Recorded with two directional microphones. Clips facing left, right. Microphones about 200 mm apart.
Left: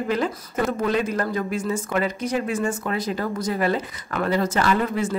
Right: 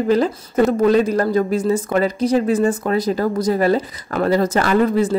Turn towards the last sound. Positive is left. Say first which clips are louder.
# right 6 dB
turn(degrees=-35)  # may be behind; listen again after turning